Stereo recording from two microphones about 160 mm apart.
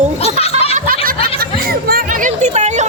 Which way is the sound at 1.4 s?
70° right (ahead or behind).